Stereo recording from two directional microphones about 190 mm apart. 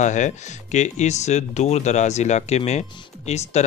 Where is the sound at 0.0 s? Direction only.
40° left (ahead or behind).